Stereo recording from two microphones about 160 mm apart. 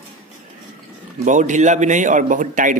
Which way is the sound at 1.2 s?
50° right (ahead or behind).